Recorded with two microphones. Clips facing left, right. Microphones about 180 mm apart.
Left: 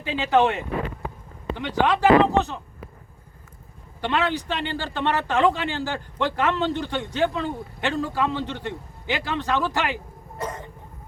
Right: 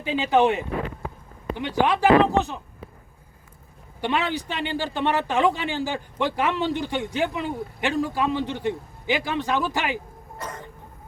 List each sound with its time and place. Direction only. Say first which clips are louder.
0.0 s speech: even; 15° right (ahead or behind)
4.0 s speech: left 1 dB; 15° right (ahead or behind)